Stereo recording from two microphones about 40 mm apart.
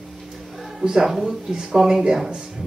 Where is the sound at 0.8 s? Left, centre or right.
Centre.